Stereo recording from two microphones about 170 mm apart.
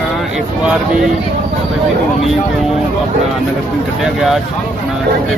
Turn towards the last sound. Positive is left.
turn(degrees=0)  # may be behind; listen again after turning